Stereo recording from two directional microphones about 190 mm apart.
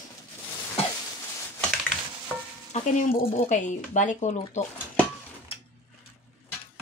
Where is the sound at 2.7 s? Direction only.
40° left (ahead or behind).